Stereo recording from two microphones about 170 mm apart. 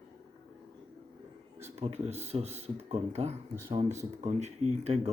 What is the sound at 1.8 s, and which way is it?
Speech, 40° right (ahead or behind).